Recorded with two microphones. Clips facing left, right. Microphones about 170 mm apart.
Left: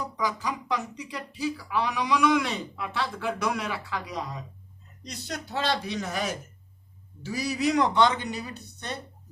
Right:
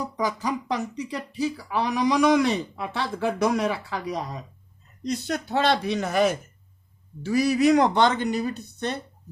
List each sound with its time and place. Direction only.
0.2 s speech: 45° right (ahead or behind)
5.0 s a man's voice: 55° right (ahead or behind)